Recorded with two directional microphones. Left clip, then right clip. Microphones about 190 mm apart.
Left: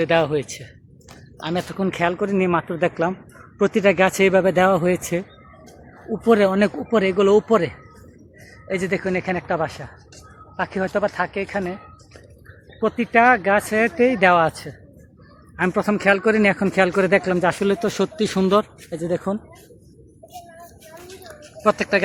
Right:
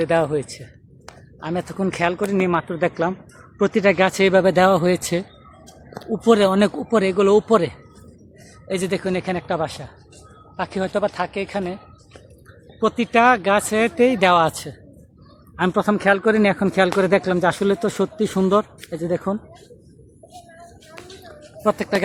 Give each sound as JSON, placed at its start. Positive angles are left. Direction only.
{"t": 0.0, "sound": "speech", "side_deg": 0}
{"t": 6.2, "sound": "speech", "side_deg": -15}
{"t": 8.7, "sound": "speech", "side_deg": -5}
{"t": 12.8, "sound": "speech", "side_deg": -10}
{"t": 15.6, "sound": "speech", "side_deg": -5}
{"t": 21.2, "sound": "a sound", "side_deg": -10}